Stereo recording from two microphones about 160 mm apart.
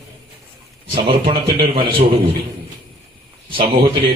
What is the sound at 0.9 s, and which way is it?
A man's voice, 30° right (ahead or behind).